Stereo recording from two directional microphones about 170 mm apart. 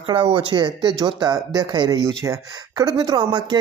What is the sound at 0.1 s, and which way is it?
Speech, 30° right (ahead or behind).